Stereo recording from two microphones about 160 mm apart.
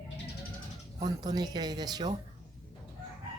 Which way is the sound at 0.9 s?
25° right (ahead or behind).